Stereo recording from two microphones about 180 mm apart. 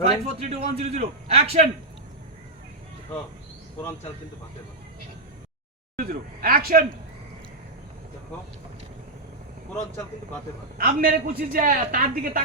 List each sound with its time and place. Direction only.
0.0 s a man's voice: 35° right (ahead or behind)
6.1 s speech: 55° right (ahead or behind)
10.8 s a woman's voice: 55° right (ahead or behind)